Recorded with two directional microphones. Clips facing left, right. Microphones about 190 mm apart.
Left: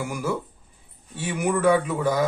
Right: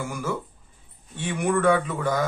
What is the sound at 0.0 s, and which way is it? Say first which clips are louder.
Speech: left 2 dB; 10° left (ahead or behind).